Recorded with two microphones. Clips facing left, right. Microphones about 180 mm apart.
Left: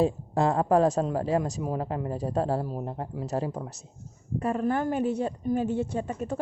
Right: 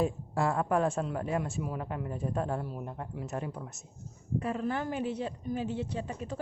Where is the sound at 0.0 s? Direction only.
30° left (ahead or behind).